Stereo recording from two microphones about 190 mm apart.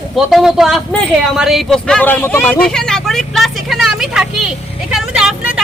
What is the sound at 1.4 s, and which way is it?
Vehicle, centre (ahead or behind).